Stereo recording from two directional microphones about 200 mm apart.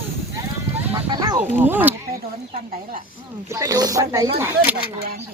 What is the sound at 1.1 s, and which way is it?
Speech, 20° right (ahead or behind).